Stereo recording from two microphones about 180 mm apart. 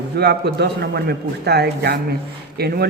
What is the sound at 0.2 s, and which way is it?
Speech, 65° right (ahead or behind).